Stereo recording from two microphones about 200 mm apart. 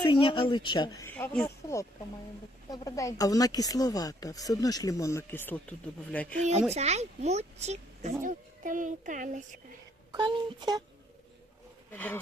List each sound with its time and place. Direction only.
0.0 s speech: 25° left (ahead or behind)
1.1 s speech: 5° left (ahead or behind)
6.4 s a woman's voice: 35° right (ahead or behind)
10.1 s speech: 20° right (ahead or behind)
11.9 s speech: 10° left (ahead or behind)